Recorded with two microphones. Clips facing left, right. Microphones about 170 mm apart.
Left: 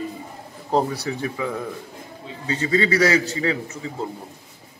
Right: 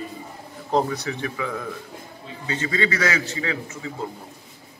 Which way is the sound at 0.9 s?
30° left (ahead or behind).